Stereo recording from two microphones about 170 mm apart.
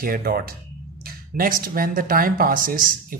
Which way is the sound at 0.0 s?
60° right (ahead or behind).